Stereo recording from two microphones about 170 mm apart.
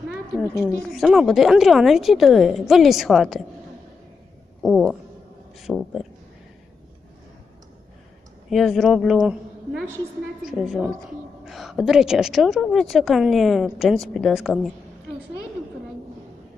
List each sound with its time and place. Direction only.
0.1 s a woman's voice: 5° right (ahead or behind)
4.6 s a woman's voice: centre (ahead or behind)
8.4 s a woman's voice: centre (ahead or behind)
10.4 s a woman's voice: 5° right (ahead or behind)